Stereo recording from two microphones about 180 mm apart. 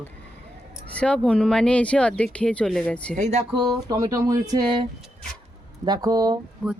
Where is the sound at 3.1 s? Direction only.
40° right (ahead or behind).